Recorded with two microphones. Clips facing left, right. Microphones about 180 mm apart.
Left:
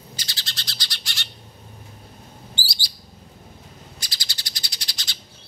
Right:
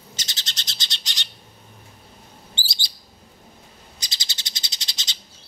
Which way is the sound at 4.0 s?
20° right (ahead or behind).